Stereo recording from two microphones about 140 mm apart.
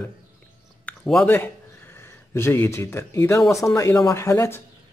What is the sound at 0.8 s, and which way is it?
Speech, 10° left (ahead or behind).